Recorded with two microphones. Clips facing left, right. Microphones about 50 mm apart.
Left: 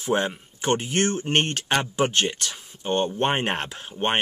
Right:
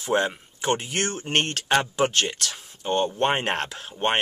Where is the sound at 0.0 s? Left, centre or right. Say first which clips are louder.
Right 1 dB; centre.